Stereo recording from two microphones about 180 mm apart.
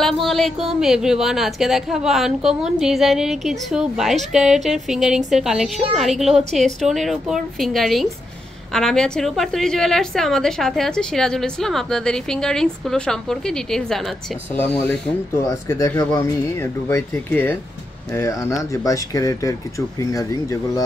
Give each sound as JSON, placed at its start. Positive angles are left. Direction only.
{"t": 0.0, "sound": "a woman's voice", "side_deg": 0}
{"t": 14.9, "sound": "speech", "side_deg": 15}